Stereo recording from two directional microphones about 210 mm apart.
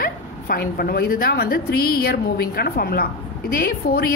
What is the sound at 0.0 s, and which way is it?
A woman's voice, 45° left (ahead or behind).